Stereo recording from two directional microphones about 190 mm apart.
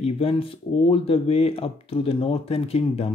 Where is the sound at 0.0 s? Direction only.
30° left (ahead or behind).